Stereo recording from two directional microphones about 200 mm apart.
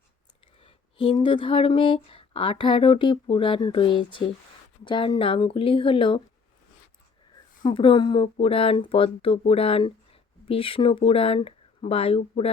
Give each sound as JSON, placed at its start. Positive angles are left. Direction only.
{"t": 0.6, "sound": "speech", "side_deg": 25}
{"t": 7.6, "sound": "speech", "side_deg": 25}